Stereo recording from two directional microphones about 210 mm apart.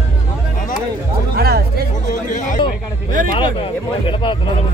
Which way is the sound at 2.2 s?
35° left (ahead or behind).